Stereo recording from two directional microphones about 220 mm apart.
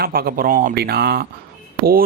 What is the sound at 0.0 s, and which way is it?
Speech, 40° right (ahead or behind).